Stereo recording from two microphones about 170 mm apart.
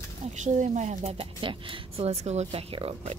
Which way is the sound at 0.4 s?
45° right (ahead or behind).